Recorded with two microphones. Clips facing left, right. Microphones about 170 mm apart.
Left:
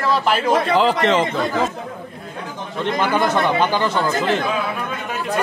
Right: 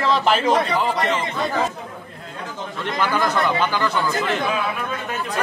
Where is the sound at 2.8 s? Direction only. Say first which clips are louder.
Left 3 dB; 20° left (ahead or behind).